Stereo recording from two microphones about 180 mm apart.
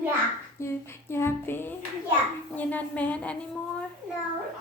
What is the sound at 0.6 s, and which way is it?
A woman's voice, 15° left (ahead or behind).